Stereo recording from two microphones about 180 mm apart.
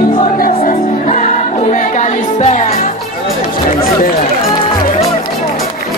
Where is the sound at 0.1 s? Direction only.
45° left (ahead or behind).